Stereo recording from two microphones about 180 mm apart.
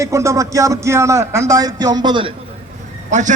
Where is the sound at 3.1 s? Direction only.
40° right (ahead or behind).